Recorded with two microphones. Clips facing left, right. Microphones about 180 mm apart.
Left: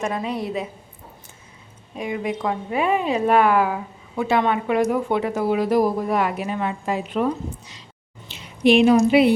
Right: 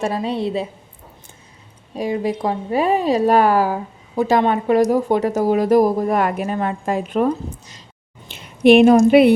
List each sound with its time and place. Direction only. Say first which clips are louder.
0.0 s a woman's voice: right 4 dB; 30° right (ahead or behind)
2.0 s a woman's voice: right 5 dB; 35° right (ahead or behind)
8.3 s a woman's voice: right 5 dB; 55° right (ahead or behind)